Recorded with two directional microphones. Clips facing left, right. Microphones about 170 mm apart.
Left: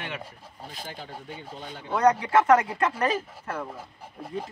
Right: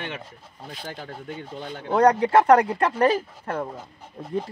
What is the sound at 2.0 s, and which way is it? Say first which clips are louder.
Speech: right 4 dB; 35° right (ahead or behind).